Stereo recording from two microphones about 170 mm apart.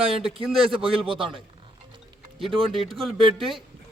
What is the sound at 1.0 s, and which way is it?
Speech, 30° right (ahead or behind).